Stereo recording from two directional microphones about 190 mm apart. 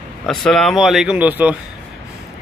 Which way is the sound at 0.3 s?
Centre (ahead or behind).